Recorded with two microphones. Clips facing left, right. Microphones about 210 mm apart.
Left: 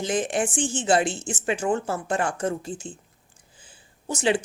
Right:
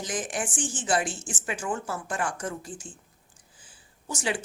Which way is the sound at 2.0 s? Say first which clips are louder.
Left 6 dB; 25° left (ahead or behind).